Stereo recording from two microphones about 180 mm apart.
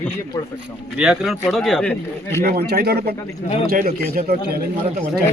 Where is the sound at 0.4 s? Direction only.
15° left (ahead or behind).